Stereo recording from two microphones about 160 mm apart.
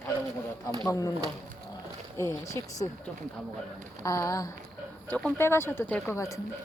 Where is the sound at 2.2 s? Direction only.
20° left (ahead or behind).